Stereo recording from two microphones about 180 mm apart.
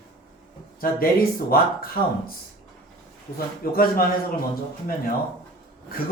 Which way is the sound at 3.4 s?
55° left (ahead or behind).